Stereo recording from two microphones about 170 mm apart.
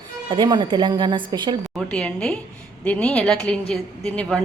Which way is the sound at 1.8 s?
5° left (ahead or behind).